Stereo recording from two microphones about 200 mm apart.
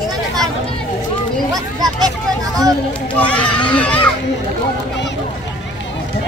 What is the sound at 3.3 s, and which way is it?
Speech, 5° left (ahead or behind).